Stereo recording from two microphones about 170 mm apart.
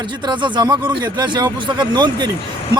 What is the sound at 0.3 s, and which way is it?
Speech, 25° right (ahead or behind).